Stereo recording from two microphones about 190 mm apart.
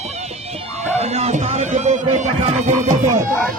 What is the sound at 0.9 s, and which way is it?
Music, 35° right (ahead or behind).